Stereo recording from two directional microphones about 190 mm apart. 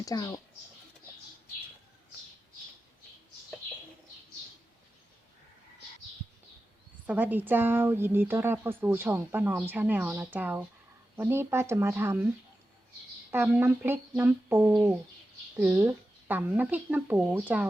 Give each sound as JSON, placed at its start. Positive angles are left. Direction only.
{"t": 0.0, "sound": "speech", "side_deg": 15}
{"t": 7.1, "sound": "speech", "side_deg": -10}
{"t": 13.3, "sound": "speech", "side_deg": -10}